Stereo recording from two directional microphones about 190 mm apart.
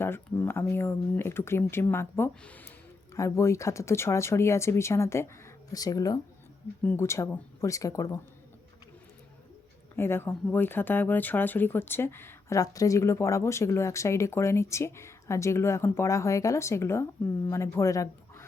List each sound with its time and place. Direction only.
0.0 s speech: 10° left (ahead or behind)
9.9 s speech: 10° left (ahead or behind)